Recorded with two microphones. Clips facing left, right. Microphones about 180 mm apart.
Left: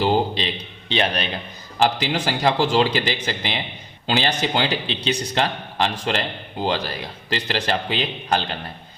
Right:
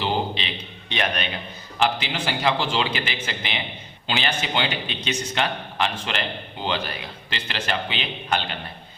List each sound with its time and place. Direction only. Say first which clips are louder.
0.0 s a man's voice: left 5 dB; 35° left (ahead or behind)